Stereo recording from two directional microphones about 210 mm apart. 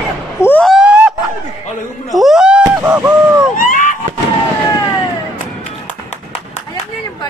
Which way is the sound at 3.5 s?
40° left (ahead or behind).